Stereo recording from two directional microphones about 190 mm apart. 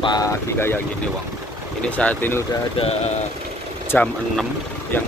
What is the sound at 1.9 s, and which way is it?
Speech, 5° left (ahead or behind).